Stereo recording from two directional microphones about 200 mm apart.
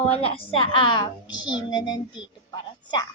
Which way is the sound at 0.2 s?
30° left (ahead or behind).